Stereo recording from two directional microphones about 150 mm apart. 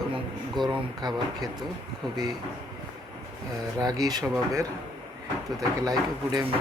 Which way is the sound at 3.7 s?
25° right (ahead or behind).